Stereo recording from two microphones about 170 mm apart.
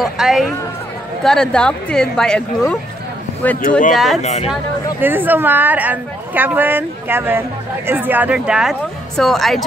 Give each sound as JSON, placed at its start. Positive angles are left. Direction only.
{"t": 0.0, "sound": "speech", "side_deg": 0}
{"t": 3.9, "sound": "speech", "side_deg": 0}
{"t": 4.2, "sound": "speech", "side_deg": 40}
{"t": 5.0, "sound": "speech", "side_deg": -10}